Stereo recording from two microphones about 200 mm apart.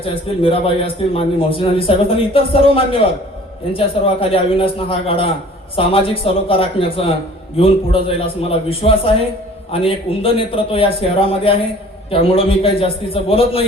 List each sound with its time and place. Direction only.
0.0 s a man's voice: 25° left (ahead or behind)